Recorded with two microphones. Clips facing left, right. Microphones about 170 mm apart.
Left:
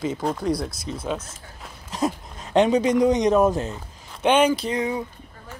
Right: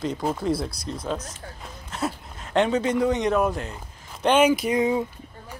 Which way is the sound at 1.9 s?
15° left (ahead or behind).